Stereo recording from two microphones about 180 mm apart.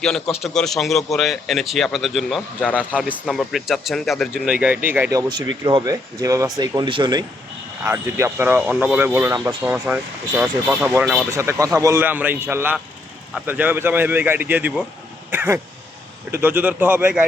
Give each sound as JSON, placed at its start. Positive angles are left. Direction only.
{"t": 0.3, "sound": "speech", "side_deg": 0}
{"t": 7.9, "sound": "speech", "side_deg": -15}
{"t": 9.7, "sound": "speech", "side_deg": -10}
{"t": 11.3, "sound": "speech", "side_deg": -15}